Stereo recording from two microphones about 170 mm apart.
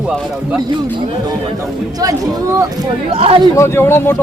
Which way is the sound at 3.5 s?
15° left (ahead or behind).